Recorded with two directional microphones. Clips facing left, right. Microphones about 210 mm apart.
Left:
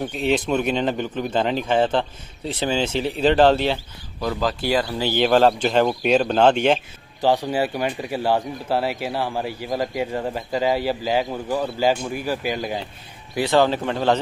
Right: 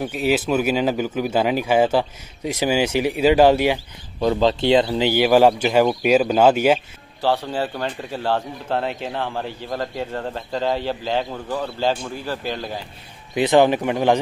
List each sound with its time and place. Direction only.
0.0 s speech: 5° right (ahead or behind)
4.2 s speech: 25° right (ahead or behind); by 6.8 s 5° right (ahead or behind)
7.2 s speech: 15° left (ahead or behind)
13.3 s speech: 20° right (ahead or behind)